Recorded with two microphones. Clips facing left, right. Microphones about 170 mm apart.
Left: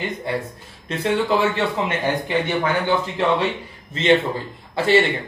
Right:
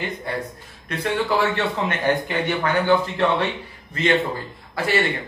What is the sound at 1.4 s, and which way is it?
Speech, 20° left (ahead or behind).